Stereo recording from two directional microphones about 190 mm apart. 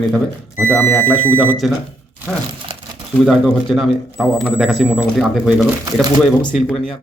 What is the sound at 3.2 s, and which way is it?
Speech, centre (ahead or behind).